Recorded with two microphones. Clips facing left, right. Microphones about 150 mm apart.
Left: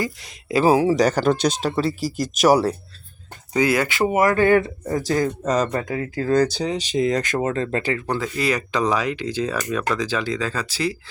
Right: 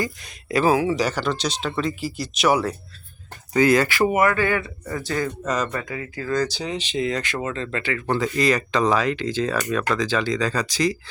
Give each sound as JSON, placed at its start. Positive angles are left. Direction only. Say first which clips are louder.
{"t": 0.0, "sound": "speech", "louder": "left 1 dB", "side_deg": 20}
{"t": 0.6, "sound": "speech", "louder": "left 4 dB", "side_deg": 35}
{"t": 3.5, "sound": "speech", "louder": "right 2 dB", "side_deg": 15}
{"t": 4.2, "sound": "speech", "louder": "left 4 dB", "side_deg": 40}
{"t": 6.3, "sound": "speech", "louder": "left 5 dB", "side_deg": 55}
{"t": 6.6, "sound": "speech", "louder": "left 4 dB", "side_deg": 40}
{"t": 8.2, "sound": "speech", "louder": "right 2 dB", "side_deg": 10}